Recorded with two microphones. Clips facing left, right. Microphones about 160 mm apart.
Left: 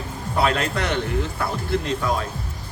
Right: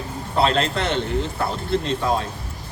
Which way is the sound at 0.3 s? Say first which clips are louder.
Right 2 dB; 25° right (ahead or behind).